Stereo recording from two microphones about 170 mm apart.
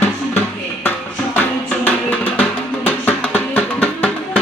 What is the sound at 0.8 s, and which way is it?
Music, 10° left (ahead or behind).